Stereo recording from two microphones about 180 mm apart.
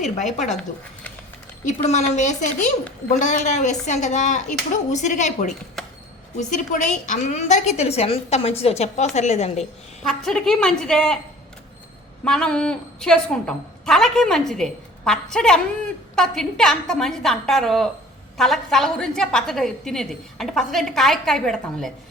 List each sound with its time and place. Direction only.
0.2 s a woman's voice: 40° left (ahead or behind)
1.6 s a woman's voice: 40° left (ahead or behind)
10.0 s a woman's voice: centre (ahead or behind)
12.2 s a woman's voice: 5° left (ahead or behind)